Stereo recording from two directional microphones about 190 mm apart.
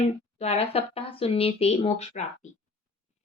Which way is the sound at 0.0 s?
35° left (ahead or behind).